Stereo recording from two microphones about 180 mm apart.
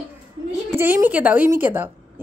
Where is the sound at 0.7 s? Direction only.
10° right (ahead or behind).